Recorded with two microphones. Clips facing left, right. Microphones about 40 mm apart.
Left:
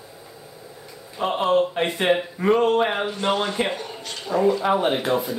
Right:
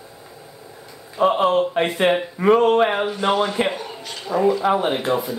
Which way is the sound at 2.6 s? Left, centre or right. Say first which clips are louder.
Right 3 dB; right.